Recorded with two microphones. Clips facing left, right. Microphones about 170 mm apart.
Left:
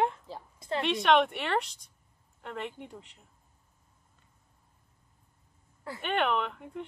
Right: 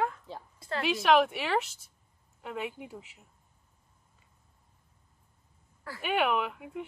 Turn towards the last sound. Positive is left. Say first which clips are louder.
# even
turn(degrees=-5)  # may be behind; listen again after turning